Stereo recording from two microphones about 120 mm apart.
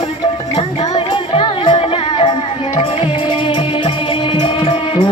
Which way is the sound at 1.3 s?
45° left (ahead or behind).